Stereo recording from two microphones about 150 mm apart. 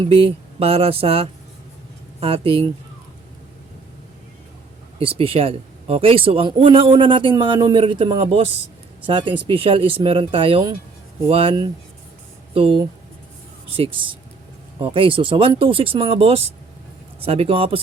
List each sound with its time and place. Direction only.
0.0 s speech: 40° right (ahead or behind)
4.9 s speech: 40° right (ahead or behind)
13.7 s speech: 35° right (ahead or behind)